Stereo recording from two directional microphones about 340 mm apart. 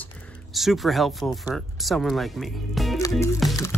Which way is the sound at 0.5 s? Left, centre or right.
Centre.